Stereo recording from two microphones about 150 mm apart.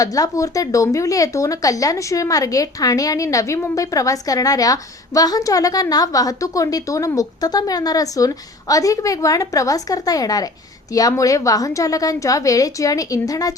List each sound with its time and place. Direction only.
0.0 s speech: 25° left (ahead or behind)